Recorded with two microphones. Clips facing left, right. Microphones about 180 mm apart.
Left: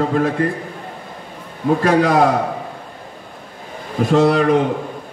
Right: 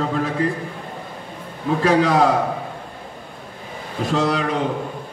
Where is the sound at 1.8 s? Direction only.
50° left (ahead or behind).